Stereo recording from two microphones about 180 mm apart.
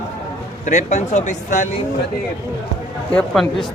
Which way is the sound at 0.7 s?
40° left (ahead or behind).